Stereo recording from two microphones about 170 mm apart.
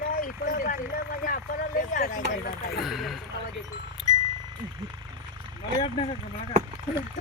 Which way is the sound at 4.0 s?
Centre (ahead or behind).